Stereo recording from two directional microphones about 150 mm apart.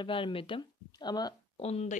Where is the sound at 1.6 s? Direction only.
45° left (ahead or behind).